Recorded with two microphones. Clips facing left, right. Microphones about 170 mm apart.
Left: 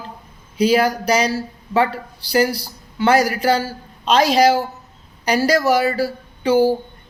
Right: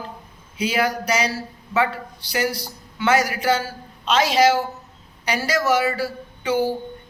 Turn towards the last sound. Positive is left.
turn(degrees=35)  # may be behind; listen again after turning